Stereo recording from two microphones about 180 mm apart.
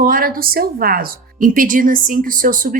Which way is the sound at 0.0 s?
50° right (ahead or behind).